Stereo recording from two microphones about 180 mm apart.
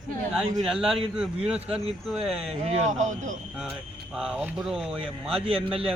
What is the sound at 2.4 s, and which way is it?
Speech, 35° right (ahead or behind).